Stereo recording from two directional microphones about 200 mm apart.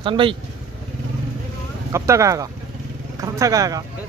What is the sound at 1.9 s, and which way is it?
Speech, 15° right (ahead or behind).